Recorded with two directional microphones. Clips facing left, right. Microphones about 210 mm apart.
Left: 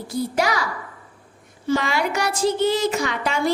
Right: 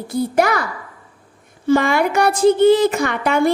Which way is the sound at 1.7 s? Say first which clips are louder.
Right 6 dB; 55° right (ahead or behind).